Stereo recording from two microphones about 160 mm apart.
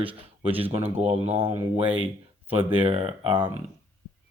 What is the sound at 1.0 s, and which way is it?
Speech, 40° right (ahead or behind).